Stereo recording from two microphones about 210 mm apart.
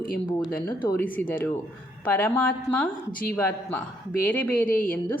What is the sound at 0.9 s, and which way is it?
A woman's voice, 10° left (ahead or behind).